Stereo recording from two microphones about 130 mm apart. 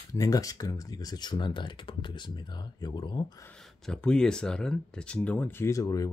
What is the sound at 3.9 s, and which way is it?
Speech, 5° left (ahead or behind).